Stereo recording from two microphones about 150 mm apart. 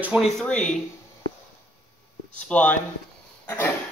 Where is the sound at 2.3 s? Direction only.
10° left (ahead or behind).